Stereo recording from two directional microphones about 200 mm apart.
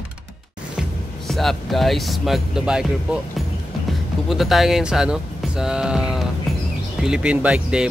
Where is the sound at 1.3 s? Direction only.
Centre (ahead or behind).